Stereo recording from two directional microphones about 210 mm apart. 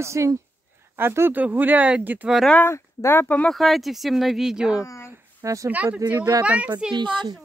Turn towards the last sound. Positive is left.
turn(degrees=-20)  # may be behind; listen again after turning